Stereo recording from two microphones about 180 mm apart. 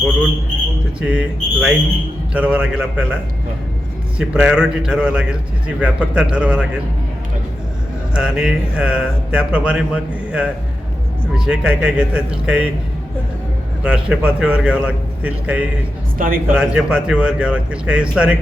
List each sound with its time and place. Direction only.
1.0 s a man's voice: 5° right (ahead or behind)
4.2 s a man's voice: 5° right (ahead or behind)
8.1 s a man's voice: 5° right (ahead or behind)
13.8 s a man's voice: 5° right (ahead or behind)
16.1 s a man's voice: 50° right (ahead or behind)
16.5 s a man's voice: 5° right (ahead or behind)